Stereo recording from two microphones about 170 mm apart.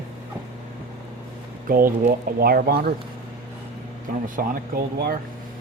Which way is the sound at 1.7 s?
60° right (ahead or behind).